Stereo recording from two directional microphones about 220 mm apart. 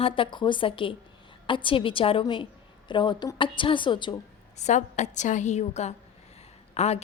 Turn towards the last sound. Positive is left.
turn(degrees=30)  # may be behind; listen again after turning